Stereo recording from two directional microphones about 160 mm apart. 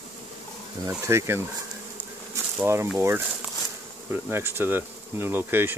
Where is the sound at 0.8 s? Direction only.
20° right (ahead or behind).